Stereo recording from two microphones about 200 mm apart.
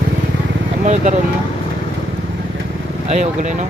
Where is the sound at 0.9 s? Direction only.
35° right (ahead or behind).